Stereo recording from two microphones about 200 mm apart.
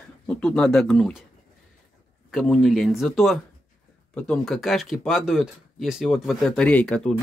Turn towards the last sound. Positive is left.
turn(degrees=5)  # may be behind; listen again after turning